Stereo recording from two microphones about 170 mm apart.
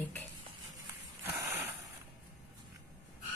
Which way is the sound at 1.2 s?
10° right (ahead or behind).